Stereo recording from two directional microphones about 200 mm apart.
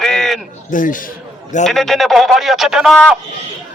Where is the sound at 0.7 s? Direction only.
40° left (ahead or behind).